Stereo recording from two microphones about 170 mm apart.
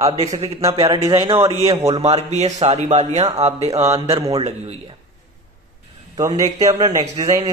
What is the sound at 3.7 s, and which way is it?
Mantra, 15° right (ahead or behind).